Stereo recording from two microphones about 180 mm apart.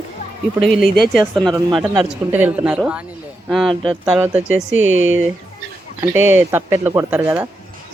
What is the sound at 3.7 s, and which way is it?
Speech, 30° right (ahead or behind).